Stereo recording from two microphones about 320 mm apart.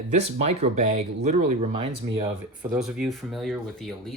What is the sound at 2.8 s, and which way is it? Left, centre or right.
Speech, centre.